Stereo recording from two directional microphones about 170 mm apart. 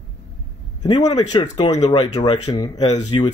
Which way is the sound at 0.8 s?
25° left (ahead or behind).